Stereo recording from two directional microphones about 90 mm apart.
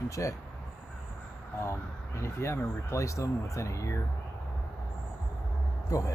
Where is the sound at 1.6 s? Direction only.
30° left (ahead or behind).